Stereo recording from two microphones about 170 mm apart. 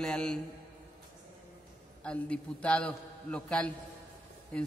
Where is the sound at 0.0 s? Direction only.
5° left (ahead or behind).